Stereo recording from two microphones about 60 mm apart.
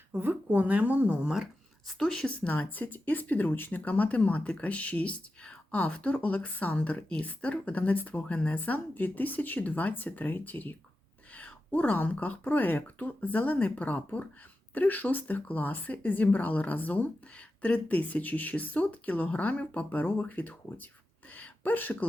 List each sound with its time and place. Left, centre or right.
0.2 s speech: right; by 1.5 s centre
1.9 s speech: centre; by 21.9 s left